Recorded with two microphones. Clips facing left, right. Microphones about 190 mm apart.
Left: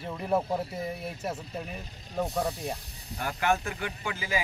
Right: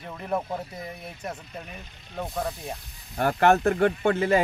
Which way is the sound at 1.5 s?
35° left (ahead or behind).